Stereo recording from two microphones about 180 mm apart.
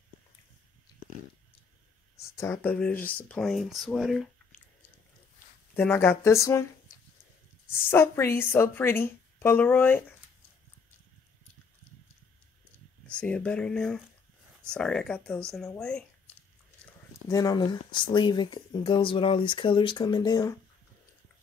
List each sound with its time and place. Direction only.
2.3 s a woman's voice: 15° left (ahead or behind)
5.8 s a woman's voice: 10° left (ahead or behind)
7.9 s a woman's voice: 15° left (ahead or behind)
13.1 s speech: 5° left (ahead or behind)
17.3 s speech: 20° left (ahead or behind)